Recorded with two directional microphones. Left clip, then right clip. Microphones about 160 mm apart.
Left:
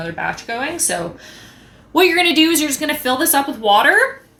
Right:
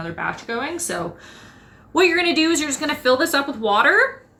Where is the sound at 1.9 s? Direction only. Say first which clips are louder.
Left 4 dB; 35° left (ahead or behind).